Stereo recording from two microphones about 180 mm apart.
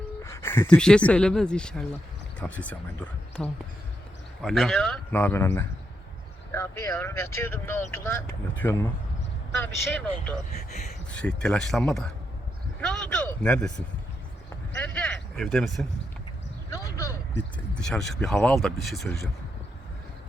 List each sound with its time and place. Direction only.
0.2 s speech: 15° left (ahead or behind)
10.7 s speech: 40° left (ahead or behind)
11.1 s speech: 5° left (ahead or behind)
16.6 s speech: 20° left (ahead or behind)
17.7 s speech: 5° left (ahead or behind)
18.3 s speech: 10° left (ahead or behind)
18.6 s speech: centre (ahead or behind)